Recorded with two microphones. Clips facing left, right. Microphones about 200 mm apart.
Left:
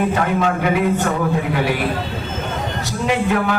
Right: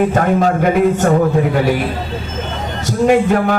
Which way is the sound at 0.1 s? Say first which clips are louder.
Right 4 dB; 45° right (ahead or behind).